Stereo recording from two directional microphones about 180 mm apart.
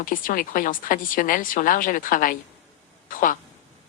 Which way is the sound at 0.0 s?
50° left (ahead or behind).